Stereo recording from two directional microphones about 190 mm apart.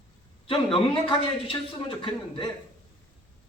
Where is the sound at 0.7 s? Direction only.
30° left (ahead or behind).